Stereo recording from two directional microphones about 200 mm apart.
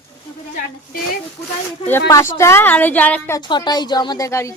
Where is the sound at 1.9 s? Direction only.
15° left (ahead or behind).